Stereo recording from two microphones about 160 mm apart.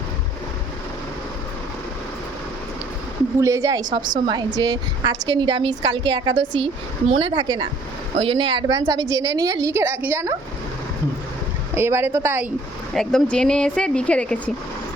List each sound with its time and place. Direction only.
3.4 s a woman's voice: 20° right (ahead or behind)
11.7 s a woman's voice: 15° right (ahead or behind)
12.9 s speech: 5° left (ahead or behind)